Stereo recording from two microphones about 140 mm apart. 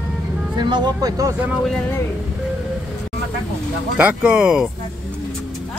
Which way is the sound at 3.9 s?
10° right (ahead or behind).